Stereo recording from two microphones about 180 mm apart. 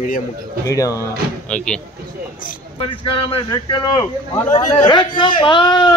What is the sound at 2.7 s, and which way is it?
A man's voice, 30° left (ahead or behind).